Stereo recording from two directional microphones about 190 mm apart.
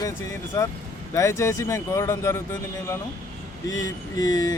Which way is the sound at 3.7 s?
20° left (ahead or behind).